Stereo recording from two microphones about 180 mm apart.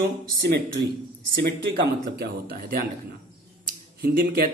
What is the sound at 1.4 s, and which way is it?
A man's voice, 60° right (ahead or behind).